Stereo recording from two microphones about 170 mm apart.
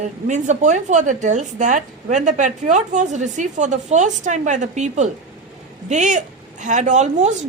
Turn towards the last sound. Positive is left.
turn(degrees=-45)  # may be behind; listen again after turning